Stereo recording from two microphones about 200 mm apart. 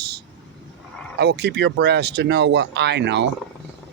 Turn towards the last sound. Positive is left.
turn(degrees=-60)  # may be behind; listen again after turning